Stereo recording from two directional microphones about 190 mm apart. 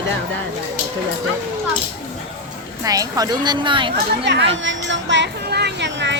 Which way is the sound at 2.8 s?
20° right (ahead or behind).